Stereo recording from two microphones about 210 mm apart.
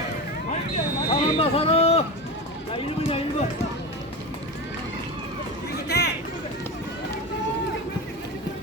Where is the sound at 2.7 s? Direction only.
25° left (ahead or behind).